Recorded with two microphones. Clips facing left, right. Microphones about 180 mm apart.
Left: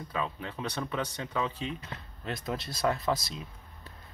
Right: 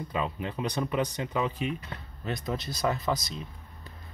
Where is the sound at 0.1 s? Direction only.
20° right (ahead or behind).